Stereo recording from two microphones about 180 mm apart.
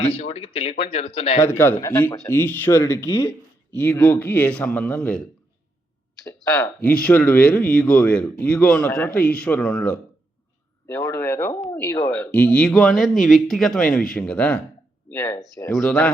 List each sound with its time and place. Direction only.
0.0 s speech: 35° left (ahead or behind)
1.4 s speech: 10° left (ahead or behind)
6.2 s speech: 15° left (ahead or behind)
15.7 s speech: centre (ahead or behind)